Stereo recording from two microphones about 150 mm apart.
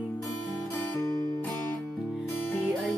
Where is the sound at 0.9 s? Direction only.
25° left (ahead or behind).